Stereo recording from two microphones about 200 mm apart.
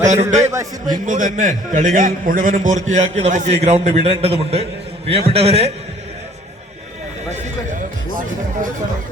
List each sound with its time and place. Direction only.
0.1 s a man's voice: 35° right (ahead or behind)
0.4 s a man's voice: 15° right (ahead or behind)
1.0 s a man's voice: 40° right (ahead or behind)
7.3 s neigh: 35° right (ahead or behind)